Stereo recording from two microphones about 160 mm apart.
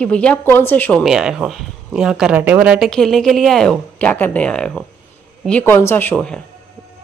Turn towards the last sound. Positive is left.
turn(degrees=10)  # may be behind; listen again after turning